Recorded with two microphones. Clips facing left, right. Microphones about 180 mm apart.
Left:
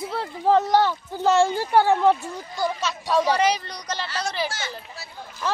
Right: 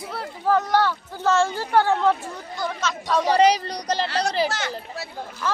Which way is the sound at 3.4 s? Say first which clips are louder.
Right 5 dB; 35° right (ahead or behind).